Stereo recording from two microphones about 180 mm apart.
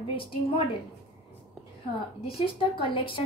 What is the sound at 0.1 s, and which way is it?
Speech, 30° left (ahead or behind).